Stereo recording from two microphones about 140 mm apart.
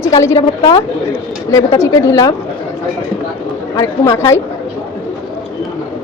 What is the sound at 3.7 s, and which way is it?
Speech, 20° left (ahead or behind).